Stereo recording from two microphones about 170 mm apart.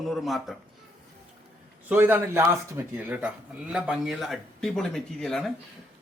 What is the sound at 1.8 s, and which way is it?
Speech, 10° right (ahead or behind).